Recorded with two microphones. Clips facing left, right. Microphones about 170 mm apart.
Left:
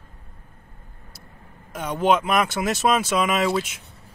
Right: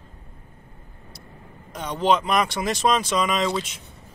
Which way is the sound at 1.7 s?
5° left (ahead or behind).